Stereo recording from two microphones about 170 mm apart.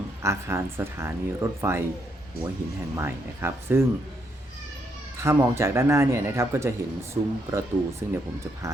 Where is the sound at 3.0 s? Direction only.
15° right (ahead or behind).